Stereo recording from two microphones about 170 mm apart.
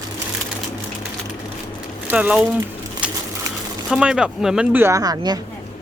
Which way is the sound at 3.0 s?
5° right (ahead or behind).